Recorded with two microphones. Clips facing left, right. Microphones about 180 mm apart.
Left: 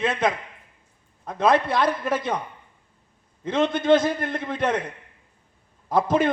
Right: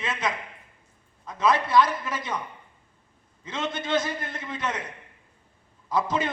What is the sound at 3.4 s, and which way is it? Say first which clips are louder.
A man's voice: left 11 dB; 55° left (ahead or behind).